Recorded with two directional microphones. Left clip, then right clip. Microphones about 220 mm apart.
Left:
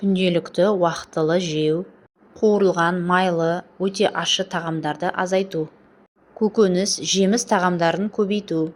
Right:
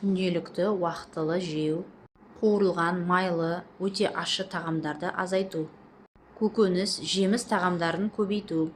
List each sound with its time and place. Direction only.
0.1 s speech: 30° left (ahead or behind)
2.4 s speech: 25° left (ahead or behind)